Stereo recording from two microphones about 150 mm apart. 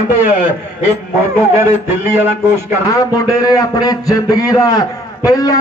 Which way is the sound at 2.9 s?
25° left (ahead or behind).